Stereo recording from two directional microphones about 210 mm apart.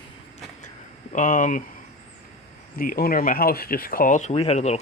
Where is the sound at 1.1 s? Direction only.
40° left (ahead or behind).